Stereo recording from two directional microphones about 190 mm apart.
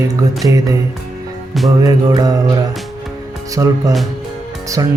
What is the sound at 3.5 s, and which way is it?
Speech, 15° right (ahead or behind).